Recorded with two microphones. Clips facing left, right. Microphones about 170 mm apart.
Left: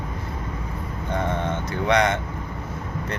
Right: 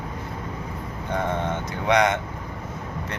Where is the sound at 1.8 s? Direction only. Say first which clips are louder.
Even; 15° right (ahead or behind).